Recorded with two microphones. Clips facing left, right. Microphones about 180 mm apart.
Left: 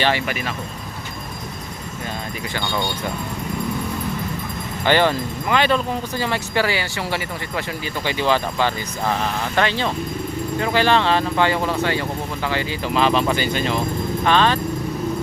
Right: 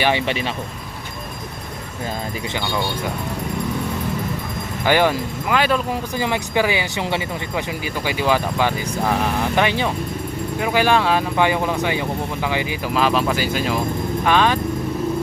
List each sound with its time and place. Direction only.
0.0 s speech: 20° right (ahead or behind)
4.9 s speech: 10° right (ahead or behind)
12.9 s speech: 5° right (ahead or behind)